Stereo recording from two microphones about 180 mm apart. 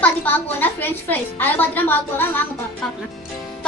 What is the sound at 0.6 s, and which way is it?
A woman's voice, 10° left (ahead or behind).